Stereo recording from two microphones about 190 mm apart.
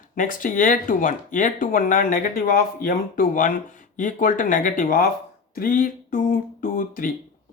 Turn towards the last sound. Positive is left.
turn(degrees=45)  # may be behind; listen again after turning